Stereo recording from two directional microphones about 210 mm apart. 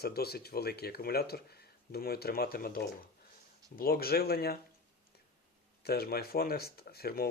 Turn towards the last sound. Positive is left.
turn(degrees=45)  # may be behind; listen again after turning